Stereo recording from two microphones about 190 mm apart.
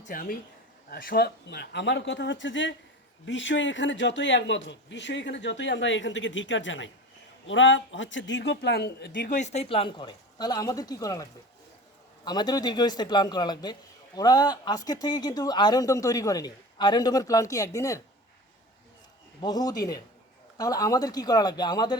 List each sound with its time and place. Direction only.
0.0 s a man's voice: 45° left (ahead or behind); by 9.3 s 60° left (ahead or behind)
9.3 s speech: 35° left (ahead or behind); by 18.0 s 15° left (ahead or behind)
19.4 s speech: 20° left (ahead or behind)